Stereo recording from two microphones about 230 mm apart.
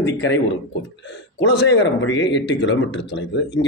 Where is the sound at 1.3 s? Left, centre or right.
Left.